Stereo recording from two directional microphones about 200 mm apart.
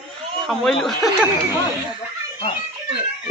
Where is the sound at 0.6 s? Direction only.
Centre (ahead or behind).